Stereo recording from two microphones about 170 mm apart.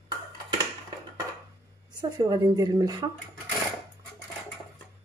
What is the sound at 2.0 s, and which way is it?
Speech, 25° right (ahead or behind).